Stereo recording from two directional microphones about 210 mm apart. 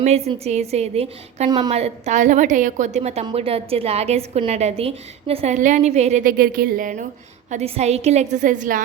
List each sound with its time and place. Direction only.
0.3 s a woman's voice: 30° right (ahead or behind)
1.7 s a woman's voice: 30° right (ahead or behind)